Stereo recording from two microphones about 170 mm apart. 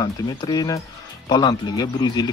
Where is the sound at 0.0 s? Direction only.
25° left (ahead or behind).